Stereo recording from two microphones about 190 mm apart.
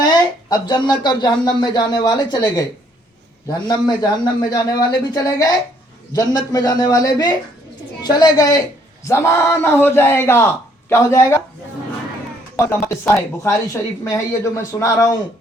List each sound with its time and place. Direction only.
0.0 s speech: 20° left (ahead or behind)
3.7 s speech: 20° left (ahead or behind)
12.5 s speech: 15° left (ahead or behind)